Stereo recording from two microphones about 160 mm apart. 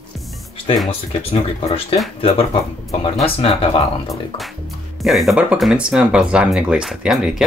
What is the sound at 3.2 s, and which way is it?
Speech, 35° left (ahead or behind).